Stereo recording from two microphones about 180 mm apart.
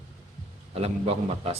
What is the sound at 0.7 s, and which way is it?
Speech, 35° right (ahead or behind).